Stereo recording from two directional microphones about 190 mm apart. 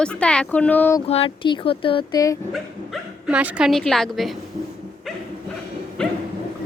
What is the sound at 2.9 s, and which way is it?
Speech, 5° right (ahead or behind).